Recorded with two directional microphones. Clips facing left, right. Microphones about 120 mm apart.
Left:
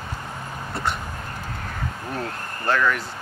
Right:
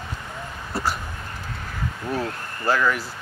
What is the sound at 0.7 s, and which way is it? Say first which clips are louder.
Dog: right 1 dB; 5° right (ahead or behind).